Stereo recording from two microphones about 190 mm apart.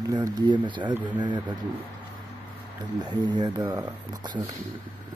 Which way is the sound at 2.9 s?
20° right (ahead or behind).